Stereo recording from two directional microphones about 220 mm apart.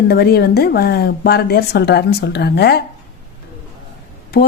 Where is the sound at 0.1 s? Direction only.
45° left (ahead or behind).